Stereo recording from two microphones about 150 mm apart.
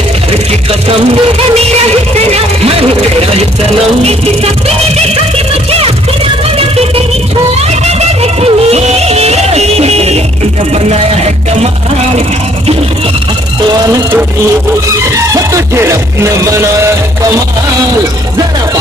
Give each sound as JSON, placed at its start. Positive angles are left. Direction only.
{"t": 2.1, "sound": "music", "side_deg": -45}
{"t": 4.0, "sound": "music", "side_deg": -45}
{"t": 5.7, "sound": "music", "side_deg": -40}
{"t": 7.5, "sound": "a sound", "side_deg": -45}
{"t": 10.7, "sound": "music", "side_deg": -45}
{"t": 13.7, "sound": "music", "side_deg": -25}
{"t": 15.3, "sound": "music", "side_deg": -20}